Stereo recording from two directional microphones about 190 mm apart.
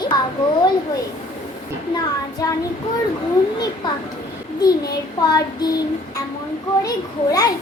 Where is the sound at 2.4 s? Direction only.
20° left (ahead or behind).